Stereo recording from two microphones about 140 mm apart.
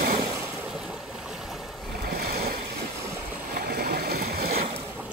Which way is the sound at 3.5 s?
90° right.